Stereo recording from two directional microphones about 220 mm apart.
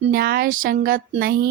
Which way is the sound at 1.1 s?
45° right (ahead or behind).